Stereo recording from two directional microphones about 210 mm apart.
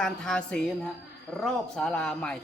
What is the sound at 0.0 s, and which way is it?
A man's voice, 5° left (ahead or behind).